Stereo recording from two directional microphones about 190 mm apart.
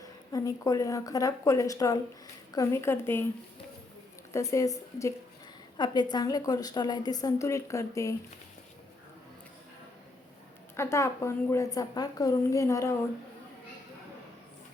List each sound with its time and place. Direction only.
0.0 s a woman's voice: 20° left (ahead or behind)
4.3 s a woman's voice: 15° left (ahead or behind)
10.8 s a woman's voice: 15° left (ahead or behind)